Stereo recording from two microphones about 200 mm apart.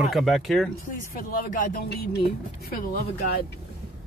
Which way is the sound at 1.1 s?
45° left (ahead or behind).